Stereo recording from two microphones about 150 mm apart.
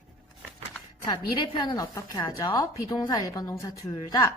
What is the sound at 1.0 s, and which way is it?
A woman's voice, 30° left (ahead or behind).